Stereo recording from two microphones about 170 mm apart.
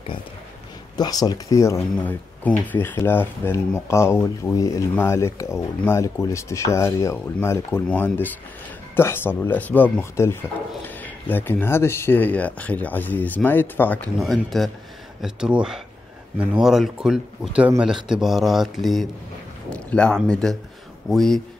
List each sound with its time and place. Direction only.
0.9 s speech: 20° left (ahead or behind)
14.2 s speech: centre (ahead or behind)
19.7 s a sound: 5° left (ahead or behind)
20.2 s speech: 5° left (ahead or behind)